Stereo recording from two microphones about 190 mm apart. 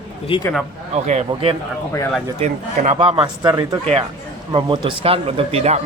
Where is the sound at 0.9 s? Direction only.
35° right (ahead or behind).